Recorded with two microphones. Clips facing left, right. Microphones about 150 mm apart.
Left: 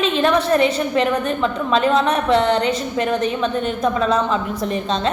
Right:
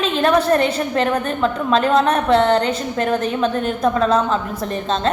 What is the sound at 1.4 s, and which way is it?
Speech, centre (ahead or behind).